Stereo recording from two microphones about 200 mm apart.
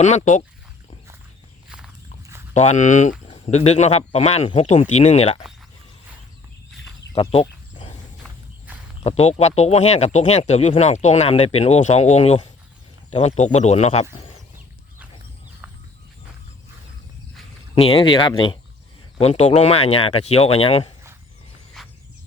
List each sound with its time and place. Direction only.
0.0 s speech: 35° left (ahead or behind)
2.5 s speech: 35° left (ahead or behind)
7.1 s speech: 30° left (ahead or behind)
8.2 s walk: 10° right (ahead or behind)
9.0 s speech: 30° left (ahead or behind)
17.7 s speech: 30° left (ahead or behind)
21.8 s a sound: centre (ahead or behind)